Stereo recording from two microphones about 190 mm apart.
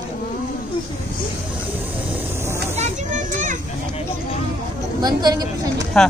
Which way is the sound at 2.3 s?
15° right (ahead or behind).